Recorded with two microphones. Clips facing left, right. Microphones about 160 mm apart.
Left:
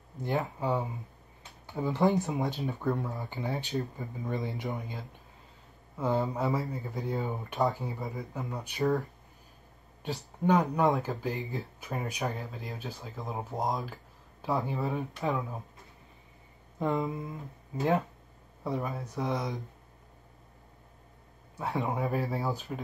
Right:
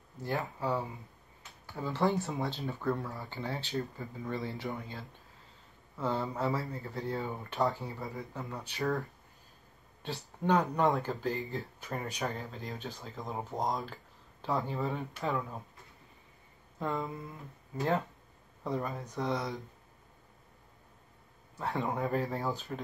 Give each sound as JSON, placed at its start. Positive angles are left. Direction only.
{"t": 0.2, "sound": "speech", "side_deg": 20}
{"t": 10.0, "sound": "speech", "side_deg": 15}
{"t": 13.5, "sound": "speech", "side_deg": 15}
{"t": 16.8, "sound": "speech", "side_deg": 20}
{"t": 22.0, "sound": "speech", "side_deg": 10}